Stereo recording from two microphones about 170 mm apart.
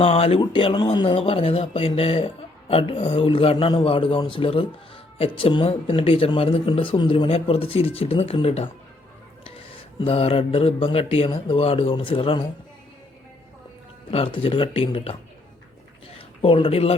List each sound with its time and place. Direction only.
0.0 s speech: 35° left (ahead or behind)
14.1 s speech: 30° left (ahead or behind)
16.4 s speech: 30° left (ahead or behind)